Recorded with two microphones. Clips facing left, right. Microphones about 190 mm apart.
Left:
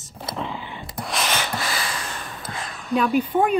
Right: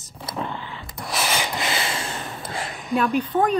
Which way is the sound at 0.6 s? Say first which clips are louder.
Left 1 dB; 15° left (ahead or behind).